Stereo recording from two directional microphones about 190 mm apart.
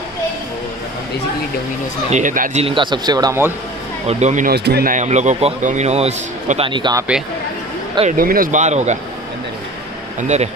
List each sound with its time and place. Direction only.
2.0 s speech: 40° right (ahead or behind)
2.6 s speech: 25° right (ahead or behind)
4.1 s speech: 40° right (ahead or behind)
4.5 s speech: 60° right (ahead or behind); by 6.7 s 35° right (ahead or behind)
6.7 s speech: 20° right (ahead or behind)
8.2 s speech: 50° right (ahead or behind)
10.2 s speech: 35° right (ahead or behind)